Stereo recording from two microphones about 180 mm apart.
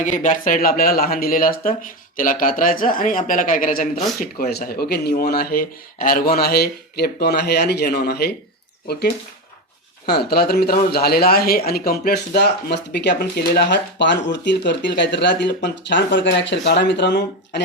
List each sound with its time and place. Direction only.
0.0 s speech: 45° left (ahead or behind); by 17.6 s 70° left (ahead or behind)